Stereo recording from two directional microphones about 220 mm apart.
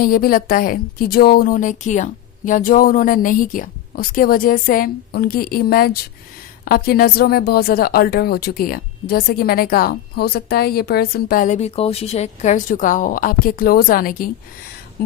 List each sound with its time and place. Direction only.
0.0 s a woman's voice: 40° left (ahead or behind)